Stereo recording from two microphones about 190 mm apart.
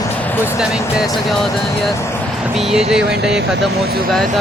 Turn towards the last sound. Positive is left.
turn(degrees=-5)  # may be behind; listen again after turning